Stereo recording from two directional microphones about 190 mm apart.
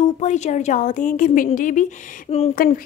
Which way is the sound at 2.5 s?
50° left (ahead or behind).